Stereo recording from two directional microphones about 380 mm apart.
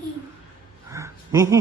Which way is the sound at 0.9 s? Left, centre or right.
Centre.